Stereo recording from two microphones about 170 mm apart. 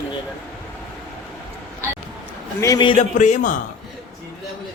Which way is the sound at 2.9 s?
45° left (ahead or behind).